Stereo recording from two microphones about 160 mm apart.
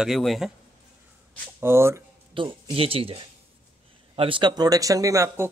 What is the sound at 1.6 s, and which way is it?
Speech, 15° right (ahead or behind).